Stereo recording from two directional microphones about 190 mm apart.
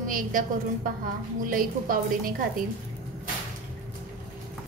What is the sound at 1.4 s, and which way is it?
A woman's voice, 45° right (ahead or behind).